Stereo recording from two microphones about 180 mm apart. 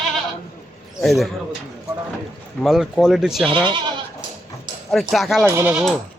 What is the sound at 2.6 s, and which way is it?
Speech, centre (ahead or behind).